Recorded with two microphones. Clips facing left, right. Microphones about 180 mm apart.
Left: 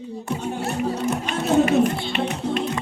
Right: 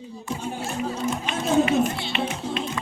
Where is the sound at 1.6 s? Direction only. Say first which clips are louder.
Left 3 dB; 50° left (ahead or behind).